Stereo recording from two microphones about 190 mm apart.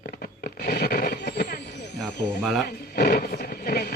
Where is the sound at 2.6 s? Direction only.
60° left (ahead or behind).